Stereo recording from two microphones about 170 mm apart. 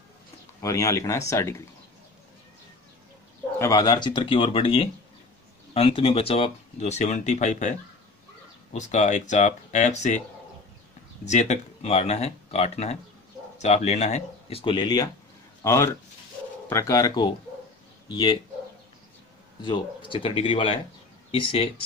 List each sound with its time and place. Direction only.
0.6 s speech: 20° left (ahead or behind)
3.5 s speech: 20° left (ahead or behind); by 7.7 s 45° left (ahead or behind)
8.7 s speech: 45° left (ahead or behind)
11.2 s speech: 40° left (ahead or behind); by 18.4 s 25° left (ahead or behind)
19.6 s speech: 30° left (ahead or behind)